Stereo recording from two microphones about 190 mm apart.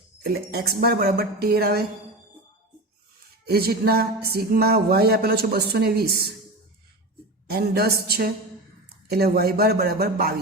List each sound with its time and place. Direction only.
0.3 s speech: 55° right (ahead or behind)
3.4 s speech: 55° right (ahead or behind)
7.4 s speech: 55° right (ahead or behind)